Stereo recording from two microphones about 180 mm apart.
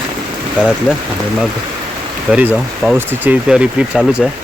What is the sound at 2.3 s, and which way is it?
Speech, 5° right (ahead or behind).